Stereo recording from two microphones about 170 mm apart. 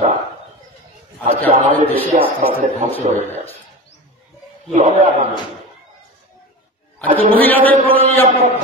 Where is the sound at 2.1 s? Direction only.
45° right (ahead or behind).